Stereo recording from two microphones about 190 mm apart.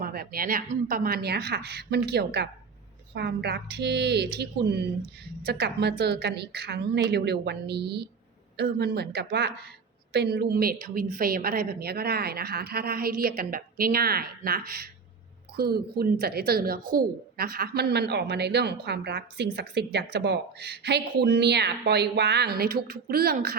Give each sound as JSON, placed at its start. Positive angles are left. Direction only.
{"t": 0.0, "sound": "a woman's voice", "side_deg": -50}